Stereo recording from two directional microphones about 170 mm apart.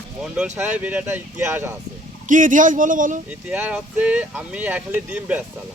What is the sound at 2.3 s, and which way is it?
Speech, 50° right (ahead or behind).